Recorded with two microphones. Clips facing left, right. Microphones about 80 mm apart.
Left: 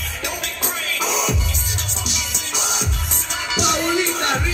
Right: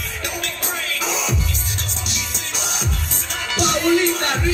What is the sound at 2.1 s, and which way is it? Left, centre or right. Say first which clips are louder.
Music: left 1 dB; right.